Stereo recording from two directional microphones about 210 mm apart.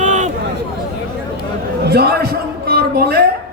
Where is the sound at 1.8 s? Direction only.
50° right (ahead or behind).